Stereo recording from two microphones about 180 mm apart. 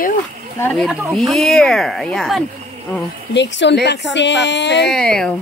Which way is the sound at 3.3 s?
80° left.